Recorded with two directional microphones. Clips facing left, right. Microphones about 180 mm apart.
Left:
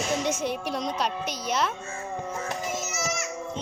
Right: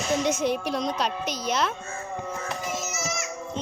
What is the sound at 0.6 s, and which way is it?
Speech, 90° right.